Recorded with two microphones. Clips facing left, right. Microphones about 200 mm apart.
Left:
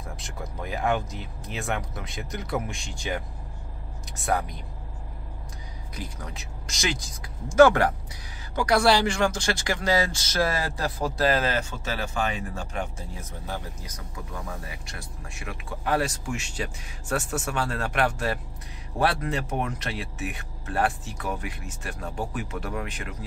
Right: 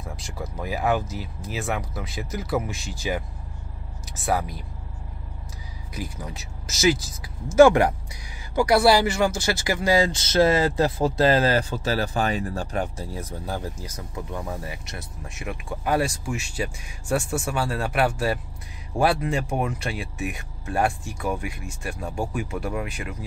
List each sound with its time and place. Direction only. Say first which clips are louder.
0.2 s speech: right 4 dB; centre (ahead or behind)
6.0 s speech: right 4 dB; 10° right (ahead or behind)